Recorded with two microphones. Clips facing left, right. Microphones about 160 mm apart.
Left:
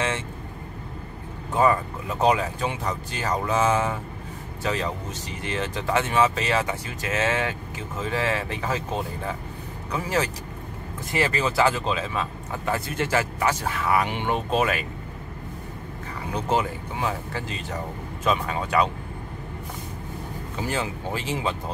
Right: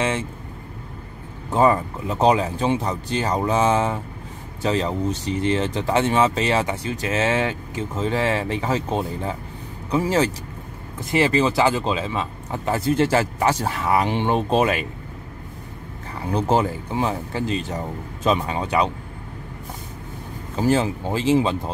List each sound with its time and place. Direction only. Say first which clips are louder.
1.5 s speech: right 3 dB; 25° right (ahead or behind)
16.4 s speech: right 3 dB; 35° right (ahead or behind)
20.5 s speech: right 9 dB; 30° right (ahead or behind)